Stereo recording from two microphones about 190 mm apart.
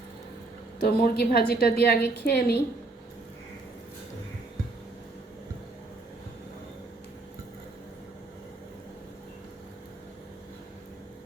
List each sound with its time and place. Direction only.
0.8 s a woman's voice: 55° left (ahead or behind)